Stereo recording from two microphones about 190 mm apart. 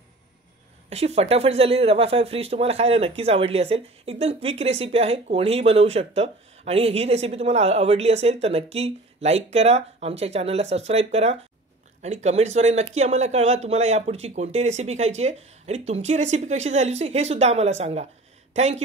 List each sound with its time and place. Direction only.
0.8 s speech: 35° right (ahead or behind)